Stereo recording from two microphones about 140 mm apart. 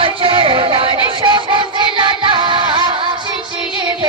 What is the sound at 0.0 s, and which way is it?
Music, 40° right (ahead or behind).